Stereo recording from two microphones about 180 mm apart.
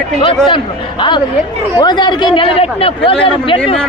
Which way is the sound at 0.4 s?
25° left (ahead or behind).